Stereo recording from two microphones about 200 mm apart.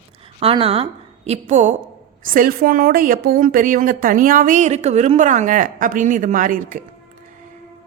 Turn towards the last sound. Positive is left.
turn(degrees=-40)  # may be behind; listen again after turning